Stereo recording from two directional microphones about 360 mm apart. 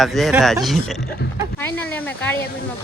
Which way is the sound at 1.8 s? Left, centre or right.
Centre.